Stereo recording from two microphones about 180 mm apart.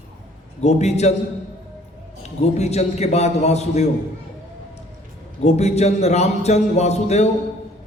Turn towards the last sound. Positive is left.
turn(degrees=35)  # may be behind; listen again after turning